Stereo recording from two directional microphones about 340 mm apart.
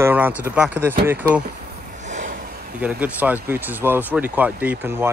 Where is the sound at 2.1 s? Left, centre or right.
Right.